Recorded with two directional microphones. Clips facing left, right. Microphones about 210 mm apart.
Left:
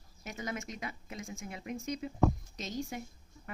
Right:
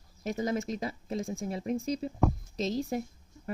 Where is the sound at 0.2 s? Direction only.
35° right (ahead or behind).